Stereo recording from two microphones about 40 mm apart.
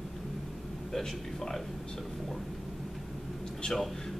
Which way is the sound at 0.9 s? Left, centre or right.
Centre.